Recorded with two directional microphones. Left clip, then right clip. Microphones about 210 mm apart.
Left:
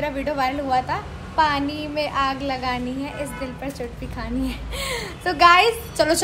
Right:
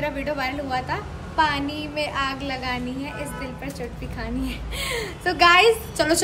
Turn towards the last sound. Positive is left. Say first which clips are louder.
# left 2 dB
turn(degrees=-5)  # may be behind; listen again after turning